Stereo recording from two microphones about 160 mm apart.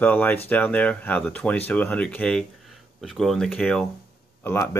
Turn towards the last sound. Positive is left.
turn(degrees=15)  # may be behind; listen again after turning